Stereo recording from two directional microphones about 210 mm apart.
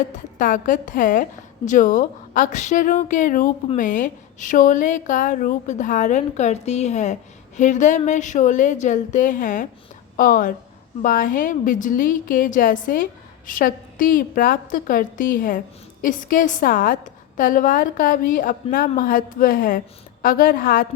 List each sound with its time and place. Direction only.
0.1 s a woman's voice: 40° left (ahead or behind)